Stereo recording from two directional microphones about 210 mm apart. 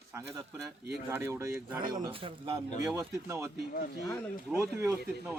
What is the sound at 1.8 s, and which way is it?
Speech, 40° right (ahead or behind).